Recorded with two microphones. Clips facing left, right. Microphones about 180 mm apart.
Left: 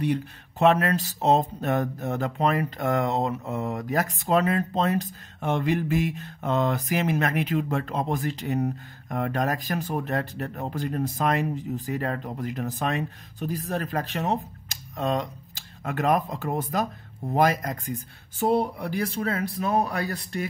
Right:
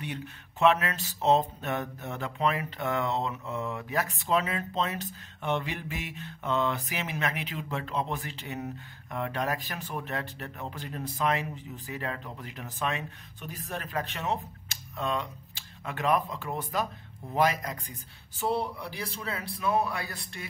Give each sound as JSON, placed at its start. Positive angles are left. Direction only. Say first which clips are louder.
{"t": 0.0, "sound": "speech", "louder": "left 11 dB", "side_deg": 40}